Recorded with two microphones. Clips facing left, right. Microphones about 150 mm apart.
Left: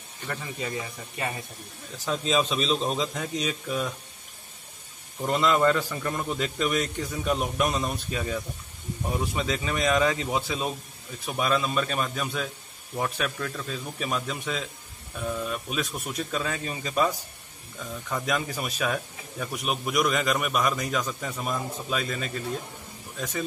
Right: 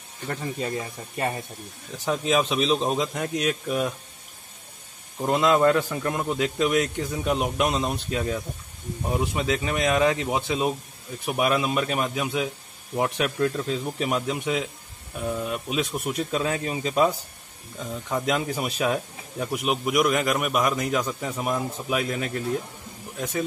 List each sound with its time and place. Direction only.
0.3 s speech: 40° right (ahead or behind)
2.0 s a man's voice: 15° right (ahead or behind)
5.2 s a man's voice: 15° right (ahead or behind)
23.1 s speech: 15° right (ahead or behind)